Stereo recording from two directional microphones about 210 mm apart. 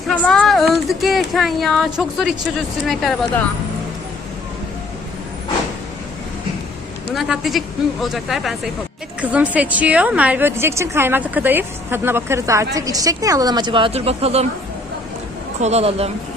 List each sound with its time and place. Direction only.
0.1 s speech: 5° left (ahead or behind)
7.1 s a woman's voice: centre (ahead or behind); by 14.4 s 30° right (ahead or behind)
15.6 s speech: 30° right (ahead or behind)